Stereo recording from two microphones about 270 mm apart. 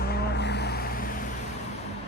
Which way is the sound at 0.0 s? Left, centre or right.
Left.